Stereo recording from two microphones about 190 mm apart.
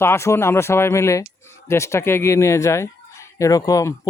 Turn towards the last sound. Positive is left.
turn(degrees=20)  # may be behind; listen again after turning